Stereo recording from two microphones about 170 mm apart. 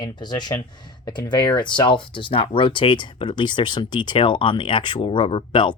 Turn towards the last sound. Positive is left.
turn(degrees=30)  # may be behind; listen again after turning